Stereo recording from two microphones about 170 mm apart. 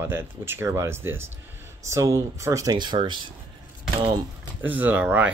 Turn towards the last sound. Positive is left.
turn(degrees=-10)  # may be behind; listen again after turning